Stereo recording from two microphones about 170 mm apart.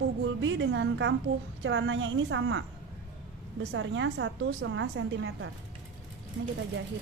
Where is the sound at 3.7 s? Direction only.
90° right.